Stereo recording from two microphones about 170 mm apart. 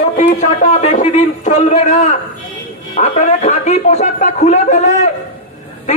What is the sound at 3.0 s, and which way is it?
A man's voice, 45° left (ahead or behind).